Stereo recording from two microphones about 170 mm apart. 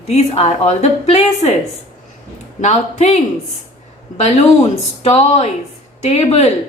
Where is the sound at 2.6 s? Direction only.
40° left (ahead or behind).